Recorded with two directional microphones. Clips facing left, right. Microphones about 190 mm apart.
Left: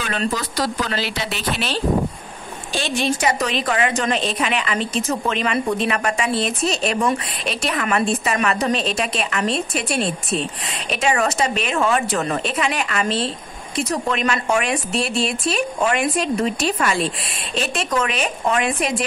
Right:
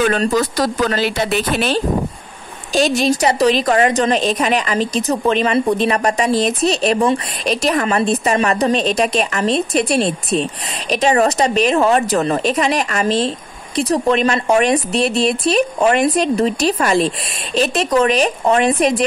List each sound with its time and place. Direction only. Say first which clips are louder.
0.0 s a woman's voice: right 8 dB; 45° right (ahead or behind)